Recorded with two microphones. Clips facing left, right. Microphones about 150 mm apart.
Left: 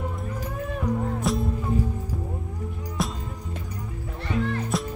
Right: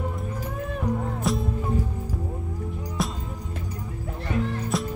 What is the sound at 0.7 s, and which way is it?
Music, centre (ahead or behind).